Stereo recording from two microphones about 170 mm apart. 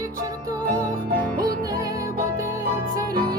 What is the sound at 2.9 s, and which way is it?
Music, 25° right (ahead or behind).